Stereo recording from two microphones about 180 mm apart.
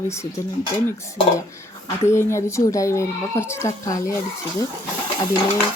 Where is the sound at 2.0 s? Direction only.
15° left (ahead or behind).